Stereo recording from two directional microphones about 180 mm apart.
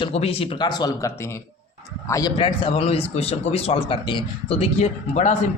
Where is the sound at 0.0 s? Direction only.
35° left (ahead or behind); by 2.3 s 20° left (ahead or behind).